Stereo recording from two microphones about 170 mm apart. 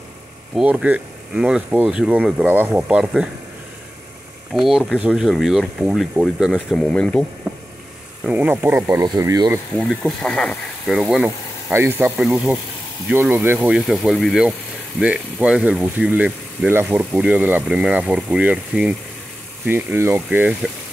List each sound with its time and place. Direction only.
0.6 s speech: 5° right (ahead or behind)
4.6 s speech: centre (ahead or behind)
8.2 s speech: 10° right (ahead or behind)
8.8 s speech: 20° right (ahead or behind)
9.8 s speech: centre (ahead or behind)
11.7 s speech: 15° right (ahead or behind)